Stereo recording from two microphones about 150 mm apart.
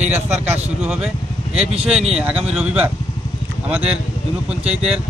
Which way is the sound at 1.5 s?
40° right (ahead or behind).